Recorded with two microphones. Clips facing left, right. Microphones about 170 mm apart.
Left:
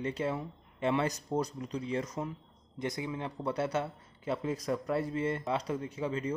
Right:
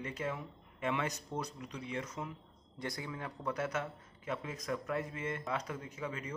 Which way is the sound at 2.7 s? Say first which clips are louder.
Left 6 dB; 20° left (ahead or behind).